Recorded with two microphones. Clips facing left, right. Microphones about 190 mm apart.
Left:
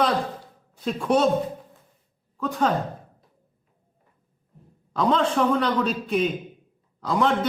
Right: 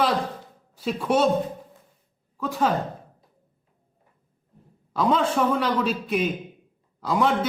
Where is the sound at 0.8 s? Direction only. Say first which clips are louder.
Left 1 dB; 5° right (ahead or behind).